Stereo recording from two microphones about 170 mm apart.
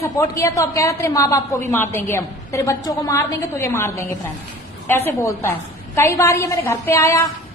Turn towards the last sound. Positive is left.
turn(degrees=20)  # may be behind; listen again after turning